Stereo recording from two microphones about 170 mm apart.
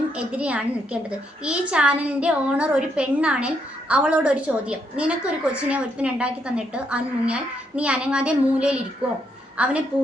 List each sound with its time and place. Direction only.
0.2 s a woman's voice: 5° right (ahead or behind)